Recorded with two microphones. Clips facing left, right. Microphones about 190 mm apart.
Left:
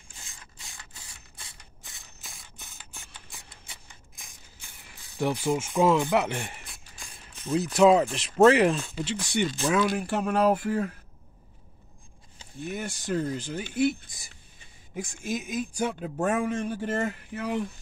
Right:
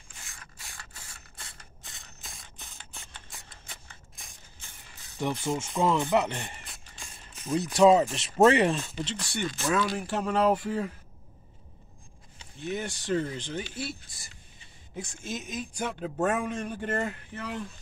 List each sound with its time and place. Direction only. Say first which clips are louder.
0.9 s mechanisms: right 1 dB; 15° left (ahead or behind)
5.2 s speech: left 3 dB; 10° left (ahead or behind)
7.3 s speech: left 1 dB; centre (ahead or behind)
9.2 s a man's voice: left 6 dB; 15° left (ahead or behind)
12.6 s a man's voice: right 1 dB; 10° left (ahead or behind)
13.7 s a sound: left 12 dB; 15° left (ahead or behind)
15.2 s a man's voice: left 6 dB; 10° left (ahead or behind)